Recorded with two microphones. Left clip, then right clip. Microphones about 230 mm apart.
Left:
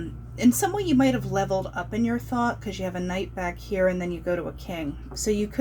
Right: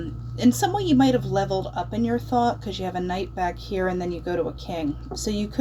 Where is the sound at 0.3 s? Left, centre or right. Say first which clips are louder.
Right 1 dB; left.